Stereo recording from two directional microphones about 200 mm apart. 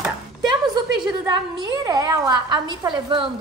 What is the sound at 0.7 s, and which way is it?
A woman's voice, 20° right (ahead or behind).